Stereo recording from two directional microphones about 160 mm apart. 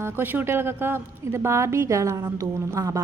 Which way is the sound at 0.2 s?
15° right (ahead or behind).